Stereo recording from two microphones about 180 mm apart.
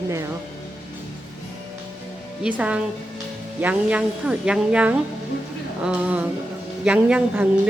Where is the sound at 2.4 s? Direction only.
5° right (ahead or behind).